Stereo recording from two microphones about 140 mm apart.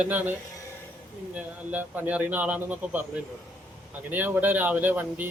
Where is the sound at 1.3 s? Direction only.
10° right (ahead or behind).